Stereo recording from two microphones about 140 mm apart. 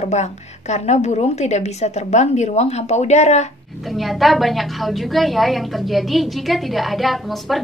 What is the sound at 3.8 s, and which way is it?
A woman's voice, centre (ahead or behind).